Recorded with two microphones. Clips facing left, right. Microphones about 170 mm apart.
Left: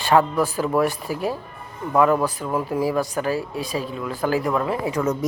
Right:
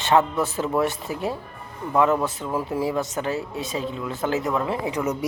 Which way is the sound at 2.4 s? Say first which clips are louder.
Left 2 dB; 10° left (ahead or behind).